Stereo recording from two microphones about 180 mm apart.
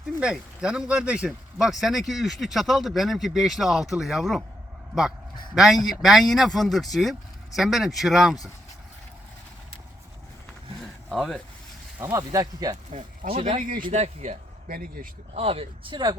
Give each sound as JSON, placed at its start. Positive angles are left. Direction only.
{"t": 0.2, "sound": "speech", "side_deg": -5}
{"t": 5.5, "sound": "speech", "side_deg": 0}
{"t": 11.1, "sound": "speech", "side_deg": 0}
{"t": 11.9, "sound": "speech", "side_deg": -15}
{"t": 12.7, "sound": "speech", "side_deg": -35}
{"t": 13.6, "sound": "speech", "side_deg": -50}
{"t": 14.0, "sound": "speech", "side_deg": -40}
{"t": 15.4, "sound": "speech", "side_deg": -30}